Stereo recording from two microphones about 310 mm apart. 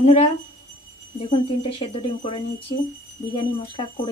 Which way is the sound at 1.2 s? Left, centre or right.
Centre.